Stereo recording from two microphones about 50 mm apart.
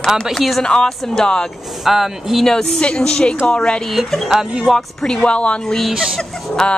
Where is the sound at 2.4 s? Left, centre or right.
Centre.